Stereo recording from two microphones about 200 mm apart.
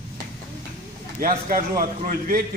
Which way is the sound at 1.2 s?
45° right (ahead or behind).